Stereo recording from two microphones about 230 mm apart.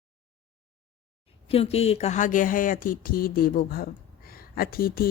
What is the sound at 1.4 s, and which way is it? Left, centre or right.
Speech, left.